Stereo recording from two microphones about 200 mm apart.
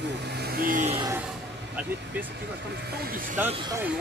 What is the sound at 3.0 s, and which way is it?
Speech, 45° right (ahead or behind).